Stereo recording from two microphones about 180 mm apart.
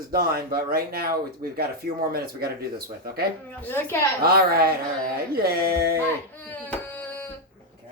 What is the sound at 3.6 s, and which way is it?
Speech, 10° left (ahead or behind).